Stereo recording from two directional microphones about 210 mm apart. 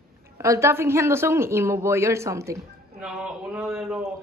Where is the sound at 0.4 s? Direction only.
15° right (ahead or behind).